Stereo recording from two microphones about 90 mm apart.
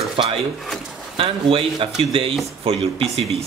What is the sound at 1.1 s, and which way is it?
Speech, 90° right.